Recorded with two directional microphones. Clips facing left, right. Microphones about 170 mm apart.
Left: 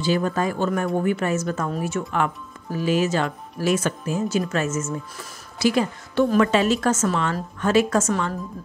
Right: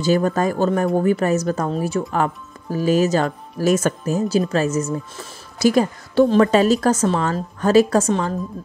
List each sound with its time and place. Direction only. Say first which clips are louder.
0.0 s speech: right 4 dB; 45° right (ahead or behind)
8.1 s speech: right 4 dB; 25° right (ahead or behind)